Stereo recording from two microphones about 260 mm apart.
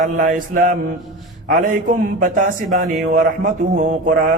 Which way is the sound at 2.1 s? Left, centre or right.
Right.